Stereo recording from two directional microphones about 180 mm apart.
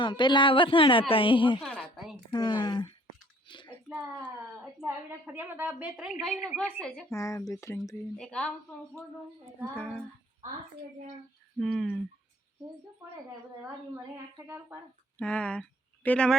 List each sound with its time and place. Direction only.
0.0 s a woman's voice: 25° left (ahead or behind)
1.6 s a sound: centre (ahead or behind)
2.3 s a woman's voice: 25° left (ahead or behind)
3.4 s a sound: 25° left (ahead or behind)
3.8 s a woman's voice: 5° right (ahead or behind)
7.1 s speech: 15° left (ahead or behind)
8.2 s a woman's voice: 5° left (ahead or behind)
9.7 s a woman's voice: 5° left (ahead or behind)
11.6 s a woman's voice: centre (ahead or behind)
13.9 s a woman's voice: 15° right (ahead or behind)
15.2 s a woman's voice: 5° left (ahead or behind)